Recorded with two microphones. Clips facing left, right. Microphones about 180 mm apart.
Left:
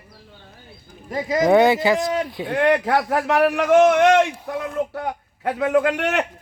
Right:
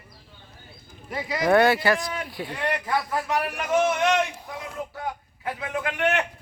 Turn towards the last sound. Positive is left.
turn(degrees=85)